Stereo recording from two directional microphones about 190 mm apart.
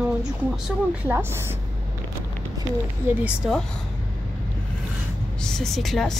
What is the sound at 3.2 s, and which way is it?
Speech, 5° right (ahead or behind).